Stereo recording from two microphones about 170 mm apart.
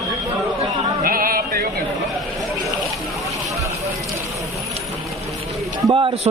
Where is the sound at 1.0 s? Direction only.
55° right (ahead or behind).